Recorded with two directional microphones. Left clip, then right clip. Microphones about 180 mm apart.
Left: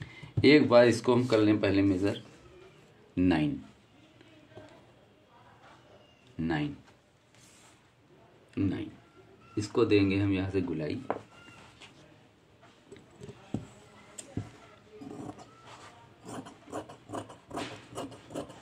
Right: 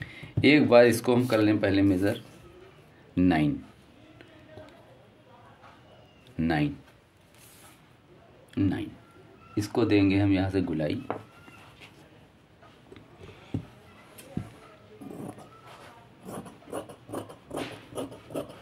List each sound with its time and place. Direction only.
0.0 s speech: 50° right (ahead or behind)
3.2 s a man's voice: 35° right (ahead or behind)
6.4 s speech: 50° right (ahead or behind)
8.5 s speech: 50° right (ahead or behind)
16.3 s a sound: 10° right (ahead or behind)